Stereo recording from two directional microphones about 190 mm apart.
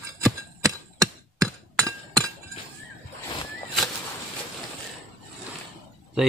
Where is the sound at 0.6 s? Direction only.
20° right (ahead or behind).